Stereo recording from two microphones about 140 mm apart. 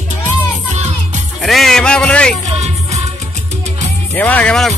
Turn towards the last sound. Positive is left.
turn(degrees=5)  # may be behind; listen again after turning